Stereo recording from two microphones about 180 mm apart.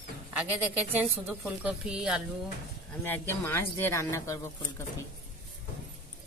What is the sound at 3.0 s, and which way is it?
Speech, 10° left (ahead or behind).